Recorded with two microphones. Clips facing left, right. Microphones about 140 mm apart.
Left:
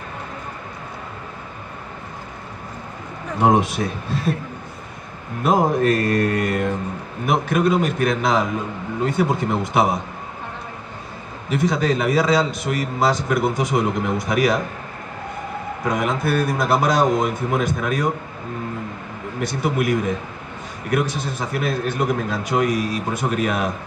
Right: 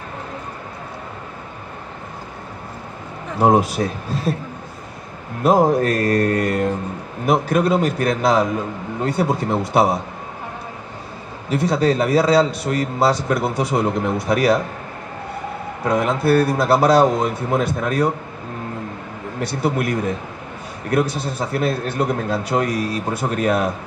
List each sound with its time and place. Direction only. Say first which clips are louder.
3.3 s a man's voice: right 2 dB; 35° right (ahead or behind)
5.4 s a man's voice: right 3 dB; 40° right (ahead or behind)
11.5 s a man's voice: right 2 dB; 30° right (ahead or behind)
15.9 s a man's voice: right 5 dB; 30° right (ahead or behind)
19.4 s a man's voice: right 1 dB; 30° right (ahead or behind)
20.9 s a man's voice: right 2 dB; 30° right (ahead or behind)